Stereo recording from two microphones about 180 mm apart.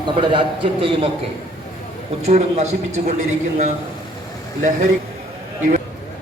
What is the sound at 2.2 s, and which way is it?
Speech, 40° right (ahead or behind).